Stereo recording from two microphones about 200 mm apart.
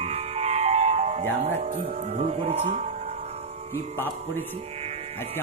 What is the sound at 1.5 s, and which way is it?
Speech, 40° right (ahead or behind).